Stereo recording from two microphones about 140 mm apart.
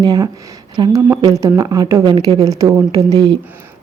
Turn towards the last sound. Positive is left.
turn(degrees=-30)  # may be behind; listen again after turning